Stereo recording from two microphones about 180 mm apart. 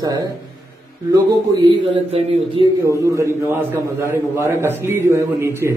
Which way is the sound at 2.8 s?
15° right (ahead or behind).